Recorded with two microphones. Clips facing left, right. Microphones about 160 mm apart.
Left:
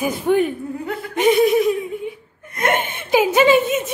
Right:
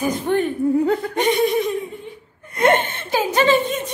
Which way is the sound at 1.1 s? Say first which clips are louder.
Left 7 dB; 5° left (ahead or behind).